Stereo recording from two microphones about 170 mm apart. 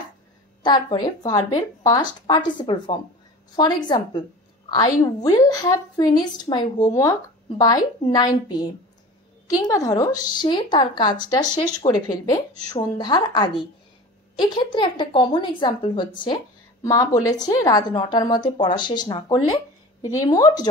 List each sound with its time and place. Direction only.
0.7 s a woman's voice: 25° left (ahead or behind)
9.6 s a woman's voice: 20° left (ahead or behind)